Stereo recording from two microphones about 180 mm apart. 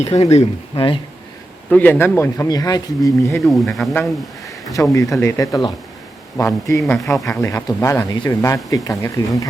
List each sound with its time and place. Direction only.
0.0 s speech: 40° left (ahead or behind)
1.7 s speech: 10° left (ahead or behind)
3.3 s speech: centre (ahead or behind)
4.7 s speech: 20° left (ahead or behind)
6.8 s speech: centre (ahead or behind)
7.3 s speech: 15° left (ahead or behind)